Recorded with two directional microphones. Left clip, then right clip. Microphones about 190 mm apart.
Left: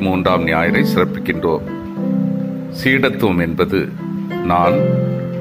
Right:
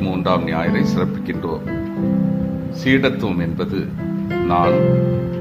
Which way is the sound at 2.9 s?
20° left (ahead or behind).